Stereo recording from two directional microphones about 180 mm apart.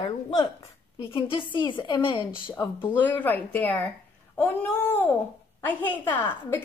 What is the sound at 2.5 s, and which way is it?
A woman's voice, 10° left (ahead or behind).